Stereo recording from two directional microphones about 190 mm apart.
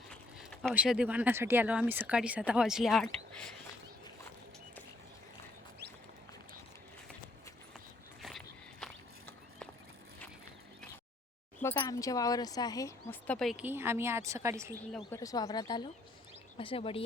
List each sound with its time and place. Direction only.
0.1 s a sound: 5° left (ahead or behind)
0.7 s speech: 5° right (ahead or behind)
8.2 s walk: centre (ahead or behind)
11.6 s speech: 15° left (ahead or behind)
13.2 s speech: 5° left (ahead or behind); by 14.8 s 15° right (ahead or behind)
15.1 s speech: 20° left (ahead or behind)